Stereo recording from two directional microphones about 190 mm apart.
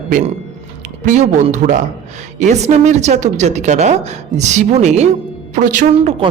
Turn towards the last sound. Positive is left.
turn(degrees=-40)  # may be behind; listen again after turning